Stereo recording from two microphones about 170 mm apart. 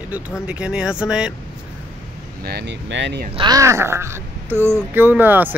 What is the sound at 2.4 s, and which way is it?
Speech, 80° right.